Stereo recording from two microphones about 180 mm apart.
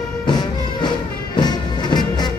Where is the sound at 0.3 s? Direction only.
25° left (ahead or behind).